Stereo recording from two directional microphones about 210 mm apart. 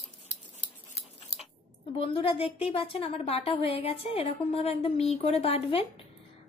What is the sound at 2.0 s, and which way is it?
A woman's voice, 25° left (ahead or behind).